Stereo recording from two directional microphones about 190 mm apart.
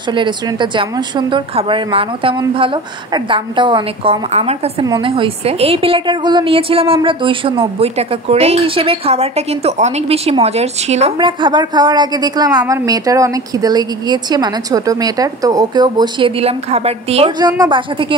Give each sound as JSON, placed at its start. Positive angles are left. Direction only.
{"t": 0.1, "sound": "a woman's voice", "side_deg": -25}
{"t": 17.4, "sound": "a woman's voice", "side_deg": -20}